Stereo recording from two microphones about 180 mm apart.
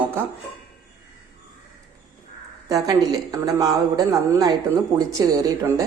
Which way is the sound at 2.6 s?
20° right (ahead or behind).